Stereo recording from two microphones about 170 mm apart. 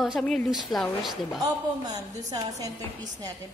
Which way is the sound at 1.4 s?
20° right (ahead or behind).